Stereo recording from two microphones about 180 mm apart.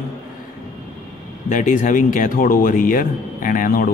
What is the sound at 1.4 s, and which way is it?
Speech, 45° left (ahead or behind).